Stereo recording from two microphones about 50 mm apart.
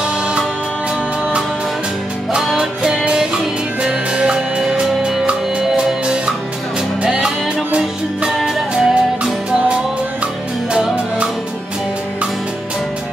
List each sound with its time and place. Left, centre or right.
2.5 s music: centre
7.1 s music: centre
8.4 s music: centre
9.2 s music: right